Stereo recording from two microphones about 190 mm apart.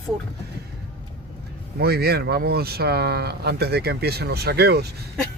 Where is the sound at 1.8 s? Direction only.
55° right (ahead or behind).